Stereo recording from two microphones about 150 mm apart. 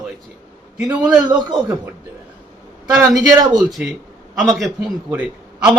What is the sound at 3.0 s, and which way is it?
Speech, 25° right (ahead or behind).